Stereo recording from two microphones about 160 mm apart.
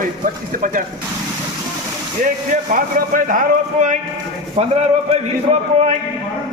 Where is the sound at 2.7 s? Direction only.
60° right (ahead or behind).